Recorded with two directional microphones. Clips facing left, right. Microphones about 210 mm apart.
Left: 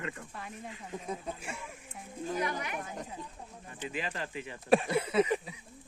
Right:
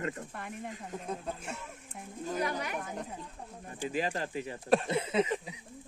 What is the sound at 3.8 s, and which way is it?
Speech, 40° right (ahead or behind).